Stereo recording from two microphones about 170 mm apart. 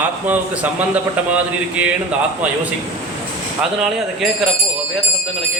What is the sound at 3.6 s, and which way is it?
Speech, centre (ahead or behind).